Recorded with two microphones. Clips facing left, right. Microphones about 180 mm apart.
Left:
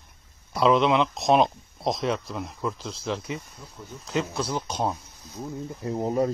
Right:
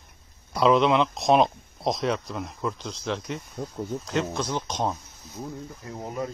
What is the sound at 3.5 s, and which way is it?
Speech, 50° right (ahead or behind).